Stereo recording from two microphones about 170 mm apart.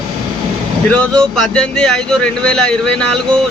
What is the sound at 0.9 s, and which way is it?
Speech, 5° left (ahead or behind).